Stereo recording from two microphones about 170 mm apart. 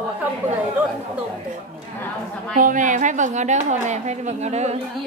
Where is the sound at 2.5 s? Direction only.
50° right (ahead or behind).